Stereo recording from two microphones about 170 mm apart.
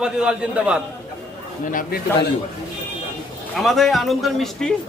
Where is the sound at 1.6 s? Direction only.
50° left (ahead or behind).